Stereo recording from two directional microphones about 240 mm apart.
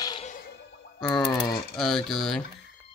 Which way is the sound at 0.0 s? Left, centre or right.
Centre.